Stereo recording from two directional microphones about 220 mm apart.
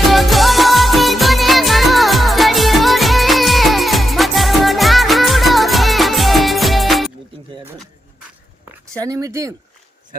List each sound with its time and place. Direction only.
0.1 s music: centre (ahead or behind)
9.0 s speech: 15° right (ahead or behind)